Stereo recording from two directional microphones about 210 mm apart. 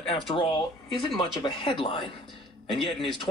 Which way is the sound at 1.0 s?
25° left (ahead or behind).